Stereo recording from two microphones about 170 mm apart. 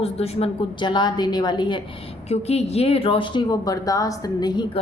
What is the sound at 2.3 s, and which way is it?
Speech, 40° left (ahead or behind).